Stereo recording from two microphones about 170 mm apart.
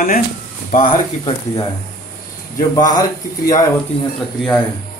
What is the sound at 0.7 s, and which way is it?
Speech, 45° left (ahead or behind).